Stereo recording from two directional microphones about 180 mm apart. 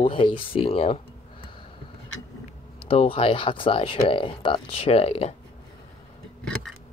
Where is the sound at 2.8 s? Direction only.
30° left (ahead or behind).